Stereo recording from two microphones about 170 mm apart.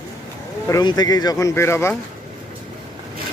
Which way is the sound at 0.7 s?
25° left (ahead or behind).